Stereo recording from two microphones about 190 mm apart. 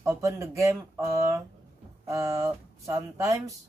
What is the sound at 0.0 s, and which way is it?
Speech, 15° right (ahead or behind).